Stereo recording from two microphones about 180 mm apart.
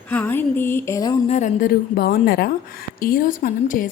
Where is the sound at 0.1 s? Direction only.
10° left (ahead or behind).